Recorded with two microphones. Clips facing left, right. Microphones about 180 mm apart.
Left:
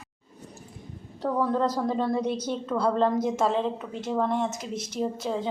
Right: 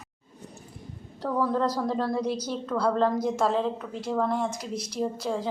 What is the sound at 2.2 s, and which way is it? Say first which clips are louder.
Speech: left 1 dB; 25° left (ahead or behind).